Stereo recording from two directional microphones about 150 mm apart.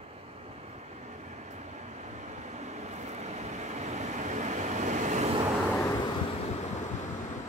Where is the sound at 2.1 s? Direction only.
50° right (ahead or behind).